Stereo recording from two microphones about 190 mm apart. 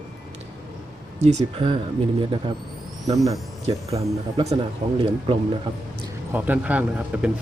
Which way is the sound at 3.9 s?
35° right (ahead or behind).